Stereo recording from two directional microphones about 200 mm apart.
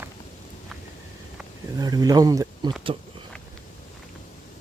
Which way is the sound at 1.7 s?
20° right (ahead or behind).